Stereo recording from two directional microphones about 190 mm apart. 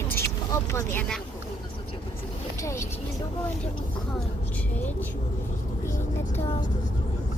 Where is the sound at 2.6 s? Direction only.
15° left (ahead or behind).